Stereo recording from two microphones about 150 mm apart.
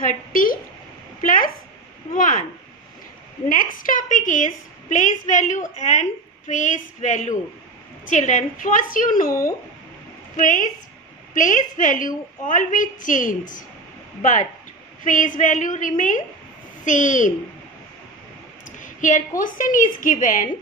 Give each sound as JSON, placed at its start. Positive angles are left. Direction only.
{"t": 0.0, "sound": "a woman's voice", "side_deg": 70}
{"t": 3.4, "sound": "a woman's voice", "side_deg": 65}
{"t": 10.3, "sound": "a woman's voice", "side_deg": 60}
{"t": 18.8, "sound": "a woman's voice", "side_deg": 60}